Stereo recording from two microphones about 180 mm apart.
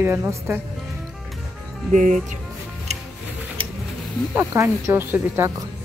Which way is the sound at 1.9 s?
45° right (ahead or behind).